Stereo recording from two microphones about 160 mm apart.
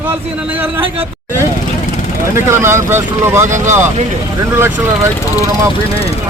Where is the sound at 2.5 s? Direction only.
15° right (ahead or behind).